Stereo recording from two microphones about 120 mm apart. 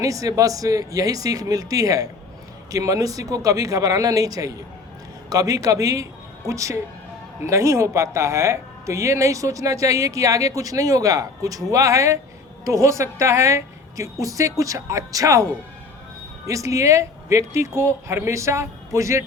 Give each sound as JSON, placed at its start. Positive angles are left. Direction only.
{"t": 0.0, "sound": "speech", "side_deg": -30}
{"t": 16.5, "sound": "speech", "side_deg": -25}